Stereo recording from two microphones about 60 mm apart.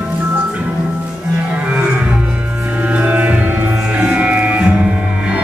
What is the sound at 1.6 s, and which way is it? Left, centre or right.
Music, right.